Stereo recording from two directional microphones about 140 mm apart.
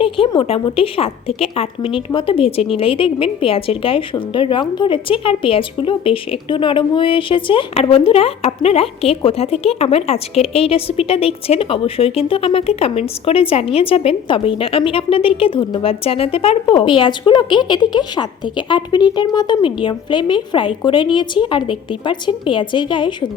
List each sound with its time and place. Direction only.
0.0 s a woman's voice: 40° left (ahead or behind)